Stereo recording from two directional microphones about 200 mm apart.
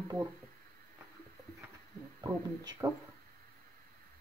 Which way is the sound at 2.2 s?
15° right (ahead or behind).